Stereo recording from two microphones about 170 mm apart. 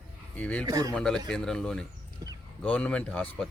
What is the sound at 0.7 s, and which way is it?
Speech, 20° right (ahead or behind).